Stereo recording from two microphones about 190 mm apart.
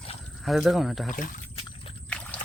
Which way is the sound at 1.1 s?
45° left (ahead or behind).